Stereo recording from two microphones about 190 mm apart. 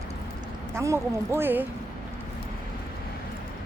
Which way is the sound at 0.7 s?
15° right (ahead or behind).